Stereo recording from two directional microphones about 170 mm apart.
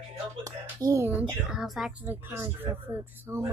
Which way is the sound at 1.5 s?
5° right (ahead or behind).